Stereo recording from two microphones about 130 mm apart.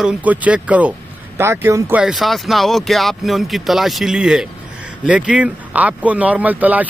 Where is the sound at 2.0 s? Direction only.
Centre (ahead or behind).